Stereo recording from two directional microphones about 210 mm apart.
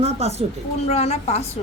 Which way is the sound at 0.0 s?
30° right (ahead or behind).